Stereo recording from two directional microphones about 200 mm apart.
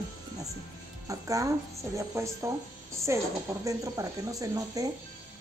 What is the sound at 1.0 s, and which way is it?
A woman's voice, 15° right (ahead or behind).